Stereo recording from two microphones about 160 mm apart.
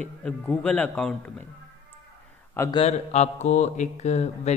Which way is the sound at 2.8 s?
45° left (ahead or behind).